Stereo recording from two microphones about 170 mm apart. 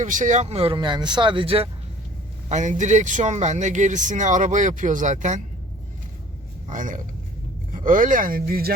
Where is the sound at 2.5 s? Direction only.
45° right (ahead or behind).